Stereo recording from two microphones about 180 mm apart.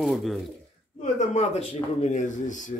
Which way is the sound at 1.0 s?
40° left (ahead or behind).